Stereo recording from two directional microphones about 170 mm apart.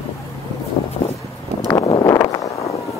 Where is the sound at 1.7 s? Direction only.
25° left (ahead or behind).